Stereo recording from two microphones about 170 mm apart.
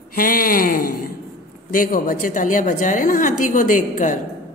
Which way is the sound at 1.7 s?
55° left (ahead or behind).